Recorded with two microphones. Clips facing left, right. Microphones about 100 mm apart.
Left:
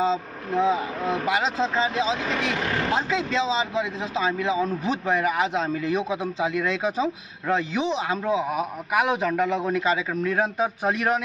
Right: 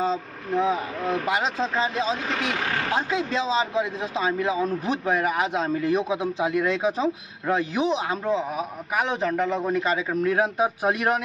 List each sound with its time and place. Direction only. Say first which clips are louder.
0.1 s a man's voice: left 1 dB; centre (ahead or behind)